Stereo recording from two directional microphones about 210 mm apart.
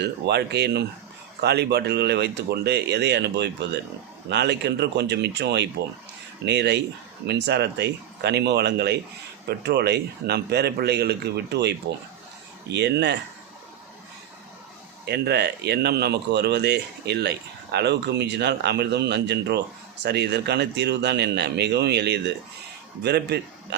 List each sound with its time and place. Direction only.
0.0 s speech: 55° right (ahead or behind)
15.0 s speech: 50° right (ahead or behind)